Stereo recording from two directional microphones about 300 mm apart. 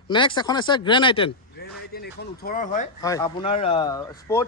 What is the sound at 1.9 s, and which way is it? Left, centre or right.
Speech, left.